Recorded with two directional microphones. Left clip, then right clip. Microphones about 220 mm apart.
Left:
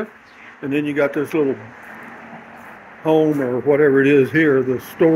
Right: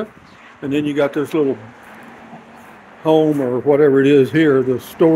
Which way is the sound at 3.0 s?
15° right (ahead or behind).